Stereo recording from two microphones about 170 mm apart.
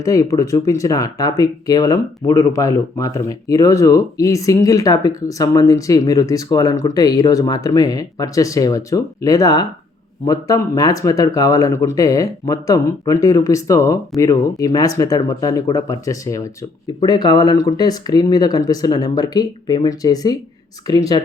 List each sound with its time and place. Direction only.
0.0 s speech: 20° left (ahead or behind)